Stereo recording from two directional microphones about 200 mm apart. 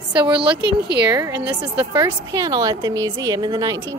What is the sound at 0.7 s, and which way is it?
Speech, 55° right (ahead or behind).